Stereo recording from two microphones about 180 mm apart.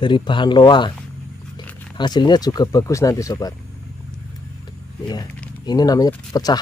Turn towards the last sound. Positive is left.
turn(degrees=20)  # may be behind; listen again after turning